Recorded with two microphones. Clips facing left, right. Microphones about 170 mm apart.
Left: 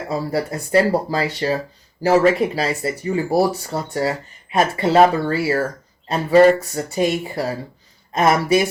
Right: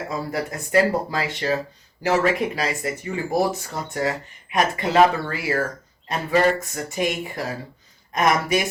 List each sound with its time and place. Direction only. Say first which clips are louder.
0.1 s speech: left 7 dB; 30° left (ahead or behind)
6.7 s speech: left 5 dB; 30° left (ahead or behind)